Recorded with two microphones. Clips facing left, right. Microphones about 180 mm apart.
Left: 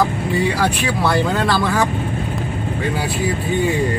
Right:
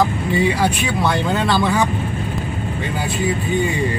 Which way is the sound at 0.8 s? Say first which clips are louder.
Left 1 dB; centre (ahead or behind).